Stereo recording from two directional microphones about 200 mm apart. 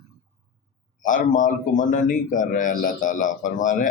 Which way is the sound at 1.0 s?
40° left (ahead or behind).